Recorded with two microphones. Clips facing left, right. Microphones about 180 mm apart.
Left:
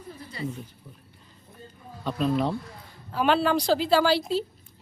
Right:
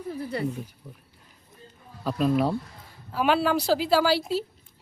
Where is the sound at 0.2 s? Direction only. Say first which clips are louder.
Right 10 dB; 60° right (ahead or behind).